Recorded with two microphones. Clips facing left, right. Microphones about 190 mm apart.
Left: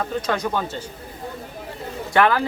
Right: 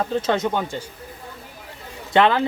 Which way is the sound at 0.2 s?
25° right (ahead or behind).